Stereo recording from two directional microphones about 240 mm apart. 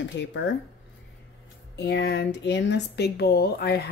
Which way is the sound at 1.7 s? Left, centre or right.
Left.